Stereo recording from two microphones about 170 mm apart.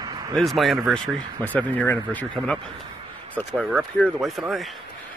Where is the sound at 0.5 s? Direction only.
Centre (ahead or behind).